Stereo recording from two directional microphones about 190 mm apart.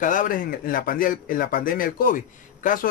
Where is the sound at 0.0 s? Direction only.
45° left (ahead or behind).